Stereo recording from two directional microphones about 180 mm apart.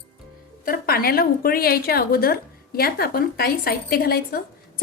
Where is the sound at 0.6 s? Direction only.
55° left (ahead or behind).